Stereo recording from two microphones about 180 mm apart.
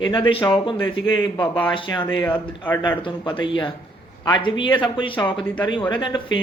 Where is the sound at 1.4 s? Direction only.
10° left (ahead or behind).